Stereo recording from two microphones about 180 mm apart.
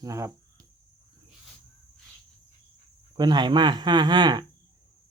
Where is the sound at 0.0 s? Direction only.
20° right (ahead or behind).